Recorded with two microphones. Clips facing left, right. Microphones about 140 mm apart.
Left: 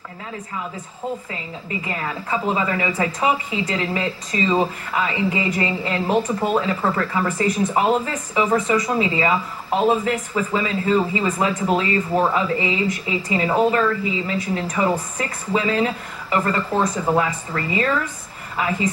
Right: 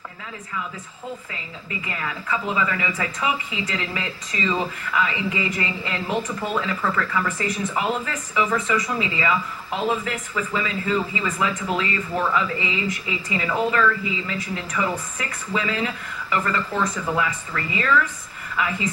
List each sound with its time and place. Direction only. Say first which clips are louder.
1.9 s speech: left 2 dB; 30° left (ahead or behind)